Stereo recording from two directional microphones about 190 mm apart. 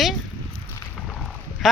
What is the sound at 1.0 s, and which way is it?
Rowboat, centre (ahead or behind).